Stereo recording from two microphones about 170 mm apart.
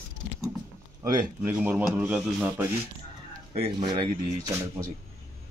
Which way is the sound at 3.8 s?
25° right (ahead or behind).